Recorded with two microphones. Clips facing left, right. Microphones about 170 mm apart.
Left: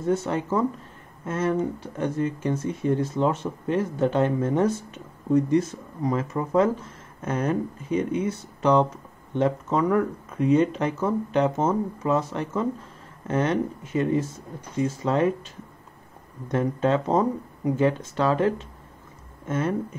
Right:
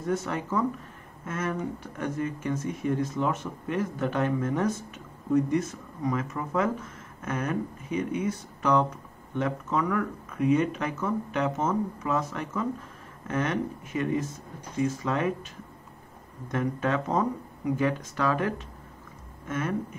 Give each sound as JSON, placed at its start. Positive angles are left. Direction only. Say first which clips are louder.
{"t": 0.0, "sound": "speech", "louder": "left 5 dB", "side_deg": 25}
{"t": 16.5, "sound": "speech", "louder": "left 5 dB", "side_deg": 25}